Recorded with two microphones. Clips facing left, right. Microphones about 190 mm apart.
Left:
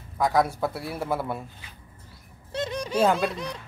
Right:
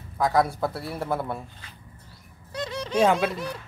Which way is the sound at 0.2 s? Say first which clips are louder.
Even; centre (ahead or behind).